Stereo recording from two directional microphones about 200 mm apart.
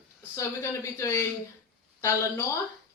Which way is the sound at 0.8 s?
15° left (ahead or behind).